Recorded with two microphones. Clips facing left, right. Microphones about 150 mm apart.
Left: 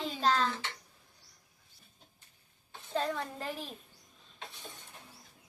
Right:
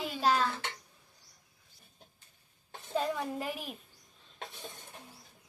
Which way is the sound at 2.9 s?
10° right (ahead or behind).